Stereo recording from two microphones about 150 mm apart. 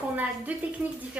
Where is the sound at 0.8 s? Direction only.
5° right (ahead or behind).